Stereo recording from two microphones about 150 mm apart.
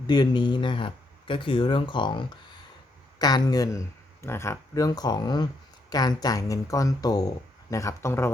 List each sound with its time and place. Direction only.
0.1 s speech: 30° left (ahead or behind)